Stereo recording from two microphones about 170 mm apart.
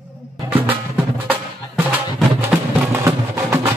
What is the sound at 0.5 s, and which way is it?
Music, 10° right (ahead or behind).